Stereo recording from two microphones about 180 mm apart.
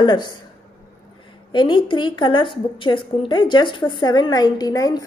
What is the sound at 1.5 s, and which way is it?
A woman's voice, 25° left (ahead or behind).